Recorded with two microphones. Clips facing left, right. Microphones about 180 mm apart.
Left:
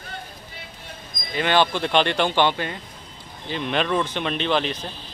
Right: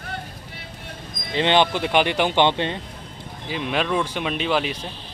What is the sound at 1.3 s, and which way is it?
Speech, 25° right (ahead or behind).